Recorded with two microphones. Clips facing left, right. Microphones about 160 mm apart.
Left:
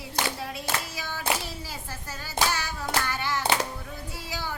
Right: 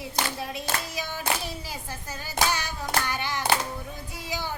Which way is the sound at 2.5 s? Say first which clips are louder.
Even; 20° right (ahead or behind).